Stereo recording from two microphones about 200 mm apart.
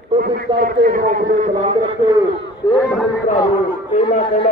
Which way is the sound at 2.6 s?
20° left (ahead or behind).